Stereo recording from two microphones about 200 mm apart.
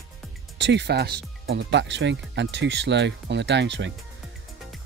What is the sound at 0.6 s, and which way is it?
Speech, 60° right (ahead or behind).